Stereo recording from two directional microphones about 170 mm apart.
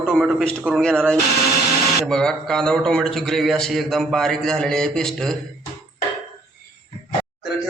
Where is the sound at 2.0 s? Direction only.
5° left (ahead or behind).